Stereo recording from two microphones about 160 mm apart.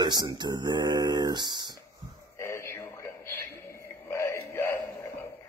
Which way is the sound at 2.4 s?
15° left (ahead or behind).